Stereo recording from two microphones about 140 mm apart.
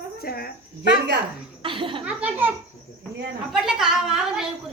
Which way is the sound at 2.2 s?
10° right (ahead or behind).